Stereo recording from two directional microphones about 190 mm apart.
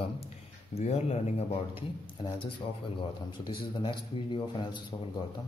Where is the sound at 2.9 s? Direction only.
25° left (ahead or behind).